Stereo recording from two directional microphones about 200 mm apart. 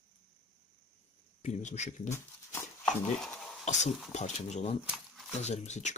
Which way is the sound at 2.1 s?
10° left (ahead or behind).